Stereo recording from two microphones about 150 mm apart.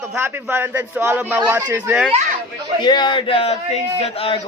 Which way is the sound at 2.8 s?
30° left (ahead or behind).